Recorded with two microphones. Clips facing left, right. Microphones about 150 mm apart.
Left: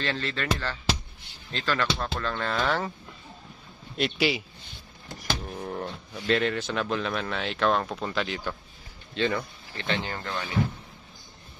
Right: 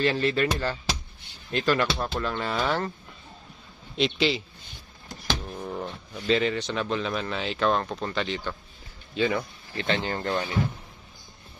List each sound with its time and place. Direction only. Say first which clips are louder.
0.0 s speech: right 7 dB; 10° right (ahead or behind)
3.9 s speech: right 2 dB; 5° left (ahead or behind)
5.6 s a sound: even; centre (ahead or behind)
5.9 s speech: right 2 dB; centre (ahead or behind)
9.8 s speech: right 4 dB; 40° right (ahead or behind)